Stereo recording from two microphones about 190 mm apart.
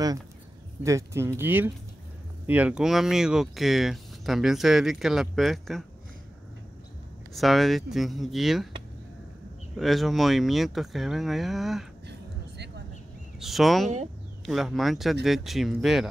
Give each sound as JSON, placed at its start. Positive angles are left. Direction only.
{"t": 0.8, "sound": "speech", "side_deg": -15}
{"t": 7.3, "sound": "speech", "side_deg": 0}
{"t": 9.8, "sound": "speech", "side_deg": 0}
{"t": 12.1, "sound": "a sound", "side_deg": -60}
{"t": 13.4, "sound": "speech", "side_deg": 0}